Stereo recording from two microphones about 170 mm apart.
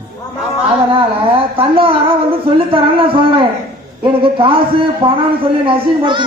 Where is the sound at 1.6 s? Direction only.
30° right (ahead or behind).